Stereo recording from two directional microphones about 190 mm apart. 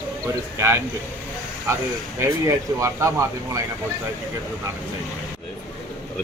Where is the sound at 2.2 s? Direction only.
15° right (ahead or behind).